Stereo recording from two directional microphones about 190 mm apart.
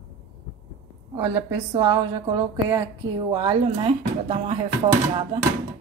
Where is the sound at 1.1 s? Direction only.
15° right (ahead or behind).